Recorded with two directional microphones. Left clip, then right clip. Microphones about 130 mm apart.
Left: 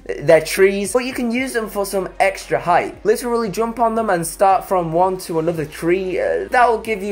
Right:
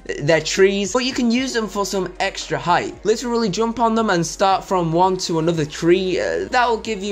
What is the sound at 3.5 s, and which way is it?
Speech, 20° right (ahead or behind).